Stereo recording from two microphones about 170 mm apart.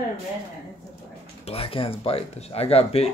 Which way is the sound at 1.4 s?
35° left (ahead or behind).